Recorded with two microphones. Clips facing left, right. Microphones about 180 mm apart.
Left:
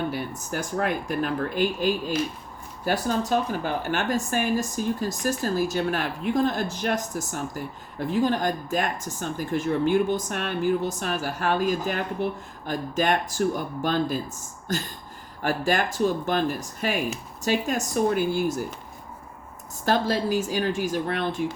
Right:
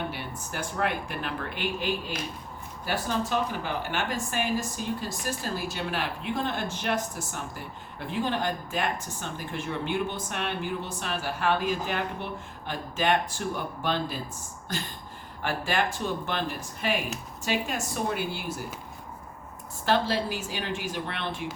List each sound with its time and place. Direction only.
0.1 s speech: 40° left (ahead or behind)
19.8 s speech: 45° left (ahead or behind)